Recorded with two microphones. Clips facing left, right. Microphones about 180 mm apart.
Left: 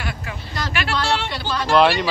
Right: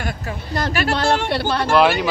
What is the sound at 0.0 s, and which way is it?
Speech, 50° right (ahead or behind).